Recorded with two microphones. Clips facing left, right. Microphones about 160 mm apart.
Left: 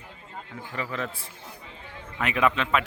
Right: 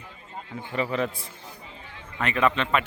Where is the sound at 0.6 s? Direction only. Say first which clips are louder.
Right 6 dB; 20° right (ahead or behind).